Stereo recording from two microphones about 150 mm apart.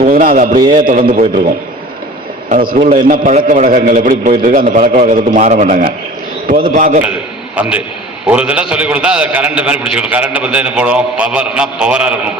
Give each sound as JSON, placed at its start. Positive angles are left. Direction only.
{"t": 0.1, "sound": "a man's voice", "side_deg": -70}
{"t": 2.7, "sound": "a man's voice", "side_deg": -60}
{"t": 7.0, "sound": "a man's voice", "side_deg": -10}